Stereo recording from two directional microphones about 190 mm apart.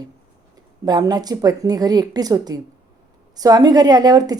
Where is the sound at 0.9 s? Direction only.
20° right (ahead or behind).